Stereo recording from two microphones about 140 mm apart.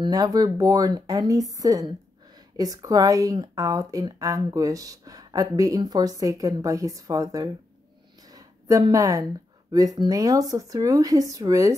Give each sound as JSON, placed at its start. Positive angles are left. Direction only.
{"t": 0.0, "sound": "speech", "side_deg": -25}